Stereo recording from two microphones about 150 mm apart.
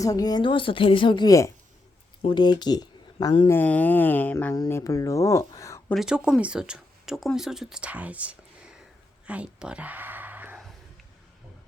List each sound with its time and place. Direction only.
0.0 s a woman's voice: 25° left (ahead or behind)
3.5 s speech: 10° left (ahead or behind)
4.5 s speech: 25° left (ahead or behind)
5.9 s speech: 5° right (ahead or behind)
9.2 s a sound: 10° right (ahead or behind)